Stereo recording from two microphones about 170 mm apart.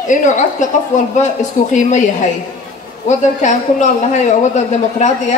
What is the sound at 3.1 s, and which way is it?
A man's voice, 45° left (ahead or behind).